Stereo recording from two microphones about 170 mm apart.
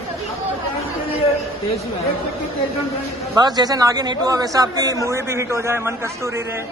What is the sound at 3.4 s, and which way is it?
A man's voice, 25° right (ahead or behind).